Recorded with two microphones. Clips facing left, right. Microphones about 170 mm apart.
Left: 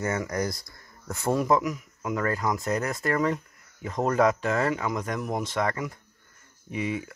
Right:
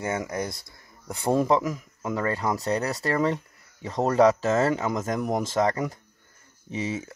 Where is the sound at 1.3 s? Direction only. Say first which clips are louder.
Right 2 dB; 30° right (ahead or behind).